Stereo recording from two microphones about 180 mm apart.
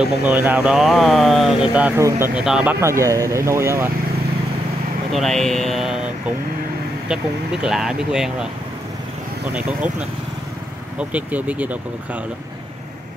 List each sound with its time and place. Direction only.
0.0 s speech: 5° right (ahead or behind)
5.1 s speech: centre (ahead or behind)
7.6 s speech: 5° right (ahead or behind)
9.5 s speech: 5° right (ahead or behind)